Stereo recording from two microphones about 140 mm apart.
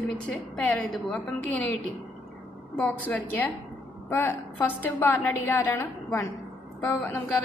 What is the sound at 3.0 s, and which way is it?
A woman's voice, 10° left (ahead or behind).